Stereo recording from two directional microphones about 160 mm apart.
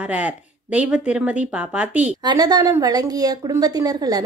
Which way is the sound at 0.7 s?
5° right (ahead or behind).